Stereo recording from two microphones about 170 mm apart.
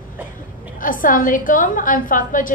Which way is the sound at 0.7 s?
55° left (ahead or behind).